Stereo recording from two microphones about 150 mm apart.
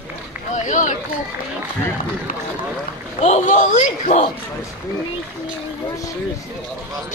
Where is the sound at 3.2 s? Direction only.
50° left (ahead or behind).